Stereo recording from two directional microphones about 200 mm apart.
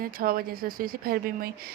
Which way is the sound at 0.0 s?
45° right (ahead or behind).